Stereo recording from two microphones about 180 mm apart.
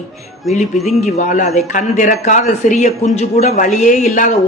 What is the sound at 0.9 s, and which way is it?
A man's voice, 40° left (ahead or behind).